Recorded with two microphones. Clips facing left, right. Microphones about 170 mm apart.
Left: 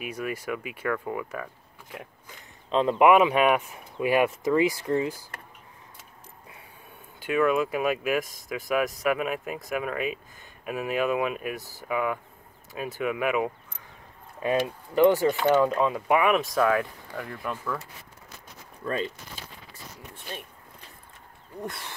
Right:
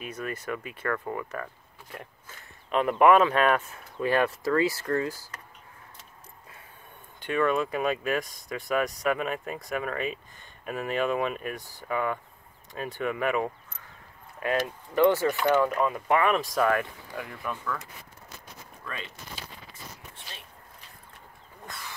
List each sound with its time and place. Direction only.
0.0 s speech: 10° left (ahead or behind)
2.7 s speech: 20° left (ahead or behind)
3.0 s speech: 10° left (ahead or behind)
7.2 s speech: 5° left (ahead or behind)
14.4 s speech: 15° left (ahead or behind); by 17.6 s centre (ahead or behind)
18.9 s speech: 35° left (ahead or behind)
20.2 s zipper: 50° left (ahead or behind)